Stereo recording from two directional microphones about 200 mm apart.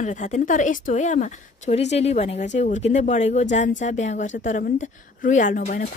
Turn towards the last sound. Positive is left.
turn(degrees=40)  # may be behind; listen again after turning